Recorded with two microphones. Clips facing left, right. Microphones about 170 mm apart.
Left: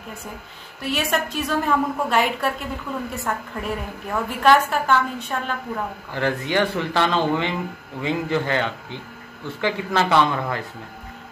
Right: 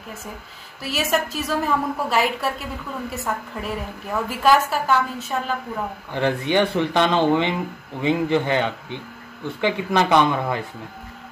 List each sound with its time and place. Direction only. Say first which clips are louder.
0.8 s a woman's voice: right 1 dB; centre (ahead or behind)
6.1 s a man's voice: right 2 dB; 20° right (ahead or behind)